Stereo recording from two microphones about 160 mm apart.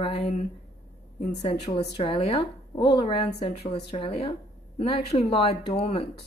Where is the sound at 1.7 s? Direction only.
35° left (ahead or behind).